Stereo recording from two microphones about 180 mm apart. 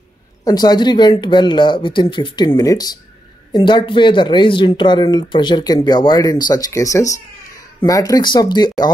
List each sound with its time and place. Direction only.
0.4 s speech: 20° left (ahead or behind)